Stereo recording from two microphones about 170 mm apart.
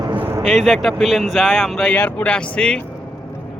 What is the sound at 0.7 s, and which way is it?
Speech, centre (ahead or behind).